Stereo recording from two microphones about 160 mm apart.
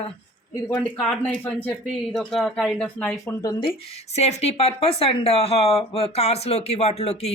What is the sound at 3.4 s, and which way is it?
A woman's voice, 35° left (ahead or behind).